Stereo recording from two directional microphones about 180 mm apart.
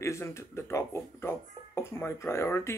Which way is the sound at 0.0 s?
15° left (ahead or behind).